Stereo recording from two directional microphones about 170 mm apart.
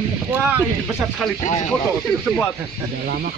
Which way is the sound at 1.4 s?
45° left (ahead or behind).